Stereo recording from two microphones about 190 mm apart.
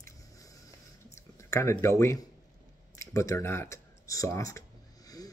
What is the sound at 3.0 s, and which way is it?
Speech, 15° left (ahead or behind).